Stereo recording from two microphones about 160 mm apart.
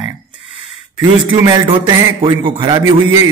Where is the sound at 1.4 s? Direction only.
25° right (ahead or behind).